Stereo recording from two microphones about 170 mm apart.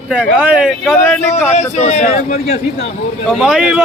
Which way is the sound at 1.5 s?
40° left (ahead or behind).